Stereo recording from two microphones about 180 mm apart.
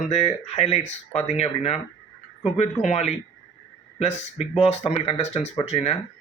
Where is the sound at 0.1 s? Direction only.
35° left (ahead or behind).